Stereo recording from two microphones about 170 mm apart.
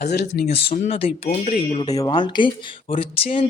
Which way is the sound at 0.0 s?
75° left (ahead or behind).